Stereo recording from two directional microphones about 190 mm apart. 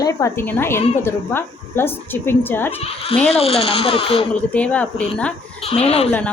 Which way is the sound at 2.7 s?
30° left (ahead or behind).